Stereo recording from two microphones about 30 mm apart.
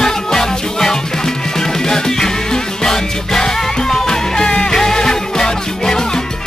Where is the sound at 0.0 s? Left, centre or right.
Centre.